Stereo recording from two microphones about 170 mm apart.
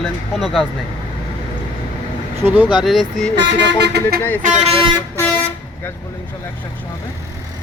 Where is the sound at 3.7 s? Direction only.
90° right.